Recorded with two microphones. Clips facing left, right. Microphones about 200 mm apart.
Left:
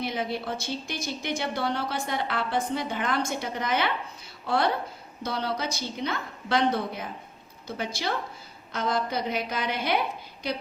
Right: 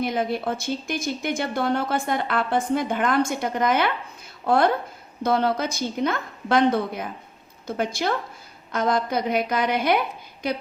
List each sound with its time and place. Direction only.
0.0 s speech: 50° right (ahead or behind)